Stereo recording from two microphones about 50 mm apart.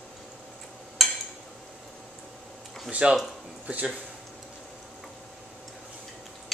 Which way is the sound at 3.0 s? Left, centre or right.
Right.